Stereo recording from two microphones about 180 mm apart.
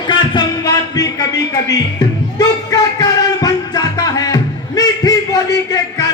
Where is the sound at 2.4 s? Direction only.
20° left (ahead or behind).